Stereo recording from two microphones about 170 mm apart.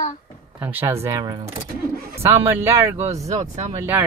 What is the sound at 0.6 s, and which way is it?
Speech, 10° right (ahead or behind).